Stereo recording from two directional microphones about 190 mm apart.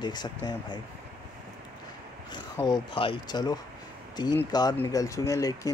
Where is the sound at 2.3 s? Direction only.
25° left (ahead or behind).